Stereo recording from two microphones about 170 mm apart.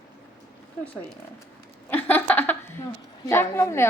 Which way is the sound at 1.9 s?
10° left (ahead or behind).